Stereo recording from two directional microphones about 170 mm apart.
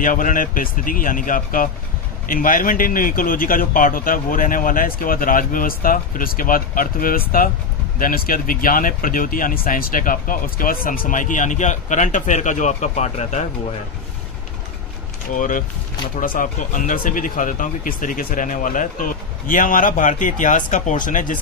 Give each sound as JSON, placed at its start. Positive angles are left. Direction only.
{"t": 0.0, "sound": "speech", "side_deg": 50}
{"t": 15.3, "sound": "speech", "side_deg": 50}